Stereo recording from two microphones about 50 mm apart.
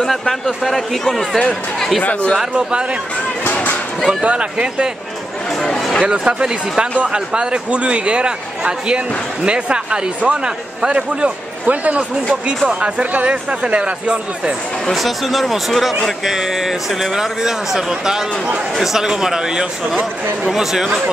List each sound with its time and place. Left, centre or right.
0.0 s speech: centre
2.0 s speech: left
4.1 s speech: right
5.6 s a sound: centre
6.0 s a man's voice: centre
14.9 s a man's voice: centre